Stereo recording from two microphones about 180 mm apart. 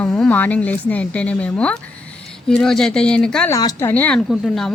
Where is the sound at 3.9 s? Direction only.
10° left (ahead or behind).